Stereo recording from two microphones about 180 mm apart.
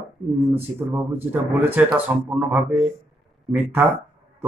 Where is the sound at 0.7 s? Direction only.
10° right (ahead or behind).